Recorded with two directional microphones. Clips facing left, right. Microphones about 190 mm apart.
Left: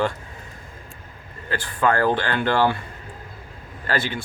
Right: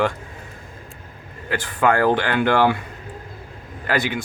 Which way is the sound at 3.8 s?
15° right (ahead or behind).